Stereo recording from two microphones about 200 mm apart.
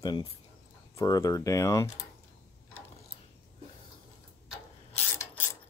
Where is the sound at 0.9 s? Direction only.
15° left (ahead or behind).